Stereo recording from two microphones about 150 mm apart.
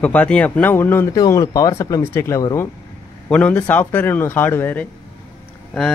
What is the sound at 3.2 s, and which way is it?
A man's voice, 5° left (ahead or behind).